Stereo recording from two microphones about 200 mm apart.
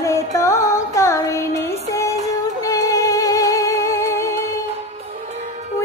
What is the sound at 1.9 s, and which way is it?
Female singing, 15° left (ahead or behind).